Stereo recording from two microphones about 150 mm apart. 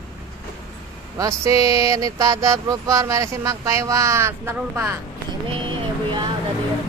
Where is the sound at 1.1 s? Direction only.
20° right (ahead or behind).